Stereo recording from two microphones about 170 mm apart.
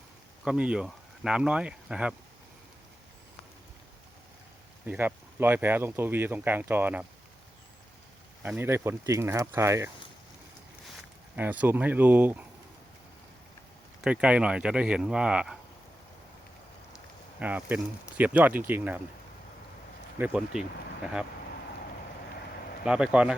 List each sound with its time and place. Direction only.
0.4 s speech: 5° right (ahead or behind)
4.9 s speech: 10° right (ahead or behind)
8.4 s speech: 15° right (ahead or behind)
11.3 s speech: 10° right (ahead or behind)
14.0 s speech: 5° right (ahead or behind)
17.4 s speech: 10° right (ahead or behind)
20.1 s speech: 10° right (ahead or behind)
22.8 s speech: 5° right (ahead or behind)